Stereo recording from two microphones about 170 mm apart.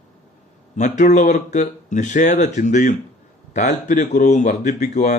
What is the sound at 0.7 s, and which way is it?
Speech, 45° left (ahead or behind).